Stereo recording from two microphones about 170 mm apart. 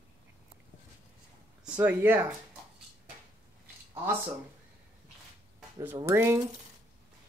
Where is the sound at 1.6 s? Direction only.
10° right (ahead or behind).